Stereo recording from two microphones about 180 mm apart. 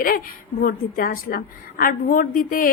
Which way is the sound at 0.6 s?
50° left (ahead or behind).